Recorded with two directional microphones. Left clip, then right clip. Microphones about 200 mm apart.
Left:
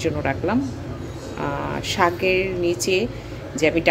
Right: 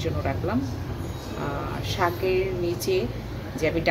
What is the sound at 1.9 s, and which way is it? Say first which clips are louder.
Speech: left 5 dB; 35° left (ahead or behind).